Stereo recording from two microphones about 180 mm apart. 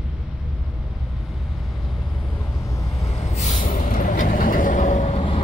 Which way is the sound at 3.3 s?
45° left (ahead or behind).